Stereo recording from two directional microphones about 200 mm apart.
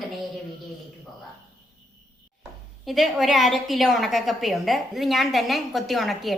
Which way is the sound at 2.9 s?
Centre (ahead or behind).